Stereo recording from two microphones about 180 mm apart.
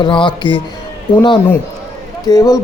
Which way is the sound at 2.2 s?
20° left (ahead or behind).